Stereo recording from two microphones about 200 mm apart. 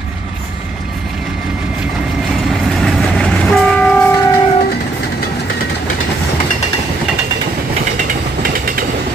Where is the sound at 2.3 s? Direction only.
Centre (ahead or behind).